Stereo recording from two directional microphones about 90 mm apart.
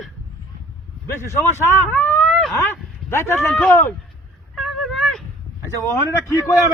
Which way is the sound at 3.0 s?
30° left (ahead or behind).